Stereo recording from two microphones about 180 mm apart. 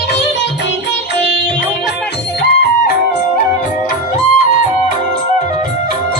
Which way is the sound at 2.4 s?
65° left (ahead or behind).